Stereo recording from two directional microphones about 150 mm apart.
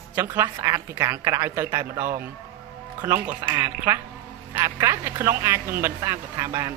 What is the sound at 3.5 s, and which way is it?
Speech, 25° right (ahead or behind).